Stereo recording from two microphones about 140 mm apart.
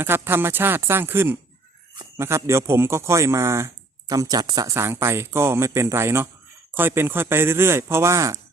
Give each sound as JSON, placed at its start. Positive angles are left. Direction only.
{"t": 0.0, "sound": "speech", "side_deg": -15}